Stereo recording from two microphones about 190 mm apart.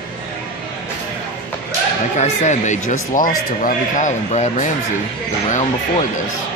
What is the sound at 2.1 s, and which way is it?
Speech, 35° left (ahead or behind).